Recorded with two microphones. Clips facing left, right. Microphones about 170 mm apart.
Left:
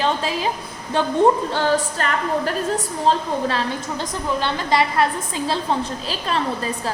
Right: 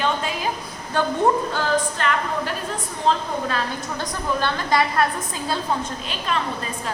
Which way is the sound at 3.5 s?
25° left (ahead or behind).